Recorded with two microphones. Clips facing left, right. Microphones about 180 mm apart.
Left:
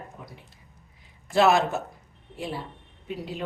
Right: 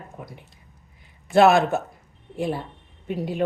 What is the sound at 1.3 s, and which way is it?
Speech, 55° right (ahead or behind).